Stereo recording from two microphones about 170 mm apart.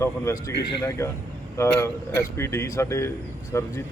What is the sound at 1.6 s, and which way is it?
Speech, 15° left (ahead or behind).